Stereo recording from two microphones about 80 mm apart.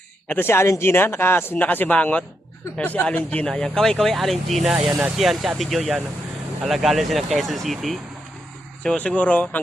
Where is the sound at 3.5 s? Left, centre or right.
Centre.